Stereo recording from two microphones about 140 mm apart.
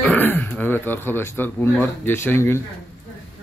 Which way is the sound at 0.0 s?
10° left (ahead or behind).